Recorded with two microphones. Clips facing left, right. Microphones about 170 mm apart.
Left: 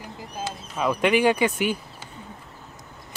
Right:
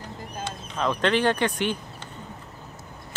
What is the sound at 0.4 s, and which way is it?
Speech, 10° left (ahead or behind).